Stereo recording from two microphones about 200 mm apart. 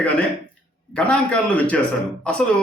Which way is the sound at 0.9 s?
5° left (ahead or behind).